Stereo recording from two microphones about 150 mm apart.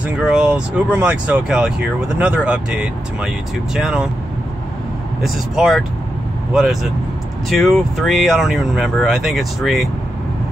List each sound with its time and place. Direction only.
0.0 s speech: 5° right (ahead or behind)
5.2 s speech: centre (ahead or behind)